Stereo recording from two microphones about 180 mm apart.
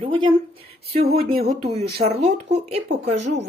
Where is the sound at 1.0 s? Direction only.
55° right (ahead or behind).